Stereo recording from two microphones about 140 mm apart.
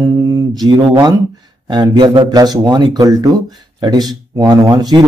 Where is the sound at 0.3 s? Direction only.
25° right (ahead or behind).